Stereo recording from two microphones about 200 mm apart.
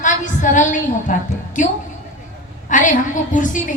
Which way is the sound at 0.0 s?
40° left (ahead or behind).